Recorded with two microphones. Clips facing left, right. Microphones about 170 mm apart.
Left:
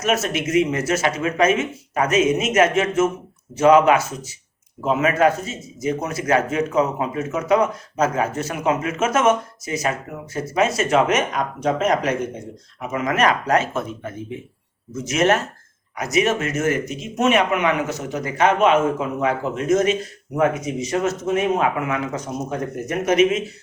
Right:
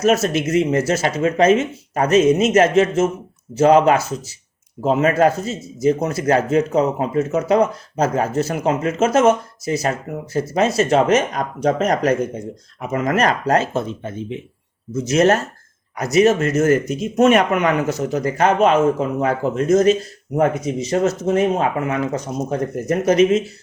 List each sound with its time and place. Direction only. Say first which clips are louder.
0.0 s speech: right 5 dB; 35° right (ahead or behind)
14.9 s speech: right 3 dB; 35° right (ahead or behind)